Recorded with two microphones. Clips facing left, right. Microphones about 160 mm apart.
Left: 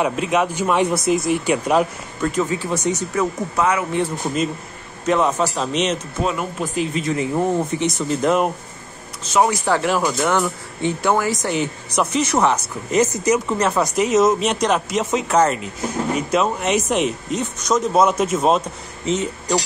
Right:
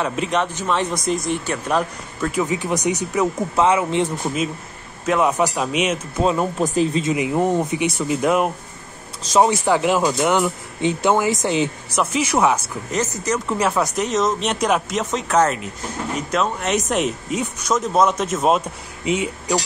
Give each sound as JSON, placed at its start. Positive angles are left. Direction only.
{"t": 0.1, "sound": "speech", "side_deg": 5}
{"t": 2.3, "sound": "speech", "side_deg": -15}
{"t": 3.5, "sound": "speech", "side_deg": -25}
{"t": 5.0, "sound": "speech", "side_deg": -5}
{"t": 6.2, "sound": "speech", "side_deg": -35}
{"t": 7.0, "sound": "speech", "side_deg": -15}
{"t": 9.4, "sound": "speech", "side_deg": -20}
{"t": 11.9, "sound": "speech", "side_deg": 0}
{"t": 12.9, "sound": "speech", "side_deg": 10}
{"t": 13.5, "sound": "speech", "side_deg": 0}